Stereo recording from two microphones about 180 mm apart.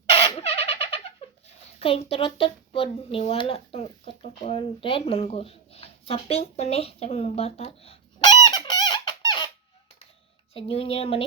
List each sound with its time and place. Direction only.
0.4 s bird: 35° left (ahead or behind)
1.5 s a woman's voice: 30° left (ahead or behind)
10.5 s speech: 30° left (ahead or behind)